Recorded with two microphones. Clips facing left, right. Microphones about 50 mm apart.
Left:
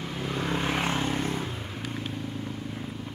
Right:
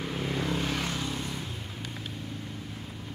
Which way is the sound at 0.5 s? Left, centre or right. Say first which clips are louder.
Left 3 dB; left.